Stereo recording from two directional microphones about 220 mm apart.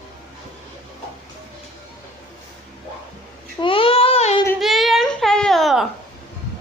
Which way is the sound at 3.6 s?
25° left (ahead or behind).